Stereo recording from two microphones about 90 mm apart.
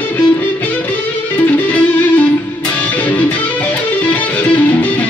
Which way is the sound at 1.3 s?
20° left (ahead or behind).